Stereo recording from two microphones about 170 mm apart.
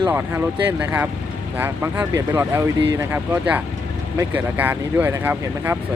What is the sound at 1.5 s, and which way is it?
Speech, 15° right (ahead or behind).